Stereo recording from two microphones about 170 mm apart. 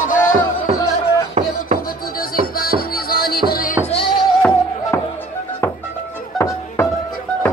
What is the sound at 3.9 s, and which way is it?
Music, 30° left (ahead or behind).